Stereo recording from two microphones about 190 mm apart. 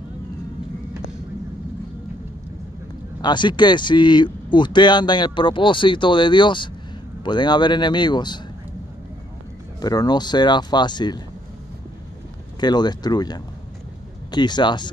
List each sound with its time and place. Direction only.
3.2 s speech: 25° left (ahead or behind)
9.8 s speech: 20° left (ahead or behind)
12.5 s speech: 20° left (ahead or behind)